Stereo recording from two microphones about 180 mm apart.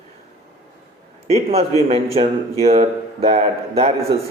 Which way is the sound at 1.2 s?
35° right (ahead or behind).